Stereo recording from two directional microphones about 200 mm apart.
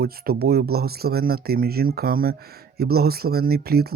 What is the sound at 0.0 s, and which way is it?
Speech, 50° right (ahead or behind).